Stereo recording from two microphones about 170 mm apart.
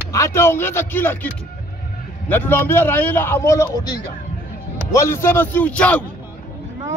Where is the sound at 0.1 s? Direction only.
15° left (ahead or behind).